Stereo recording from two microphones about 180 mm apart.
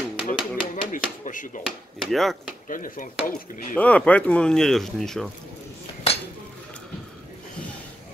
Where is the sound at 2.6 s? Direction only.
50° left (ahead or behind).